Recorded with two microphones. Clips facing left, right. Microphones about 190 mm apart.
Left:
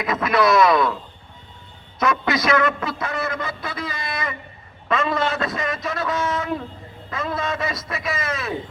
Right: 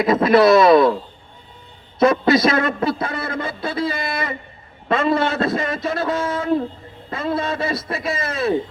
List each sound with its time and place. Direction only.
0.0 s speech: 30° right (ahead or behind)
2.0 s a man's voice: 30° right (ahead or behind)